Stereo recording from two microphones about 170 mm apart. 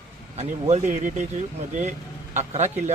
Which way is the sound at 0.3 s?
45° right (ahead or behind).